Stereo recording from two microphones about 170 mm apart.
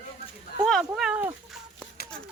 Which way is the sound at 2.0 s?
65° left (ahead or behind).